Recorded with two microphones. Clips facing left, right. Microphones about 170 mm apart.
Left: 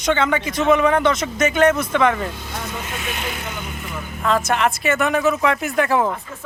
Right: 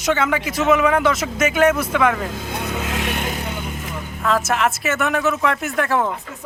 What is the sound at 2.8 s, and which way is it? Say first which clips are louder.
Speech: right 5 dB; 80° right.